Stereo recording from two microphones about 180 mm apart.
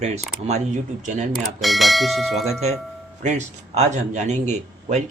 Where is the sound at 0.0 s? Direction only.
35° right (ahead or behind).